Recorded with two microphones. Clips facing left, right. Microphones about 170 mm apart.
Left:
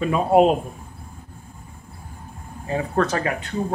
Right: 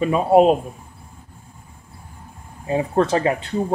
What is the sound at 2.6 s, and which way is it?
Speech, 20° right (ahead or behind).